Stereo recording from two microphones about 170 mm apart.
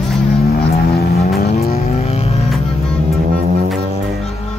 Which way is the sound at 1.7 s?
40° left (ahead or behind).